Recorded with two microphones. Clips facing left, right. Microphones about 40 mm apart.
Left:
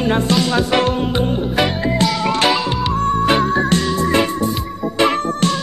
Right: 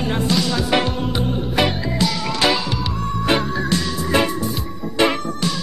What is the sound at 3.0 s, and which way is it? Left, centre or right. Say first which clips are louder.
Music: left 5 dB; left.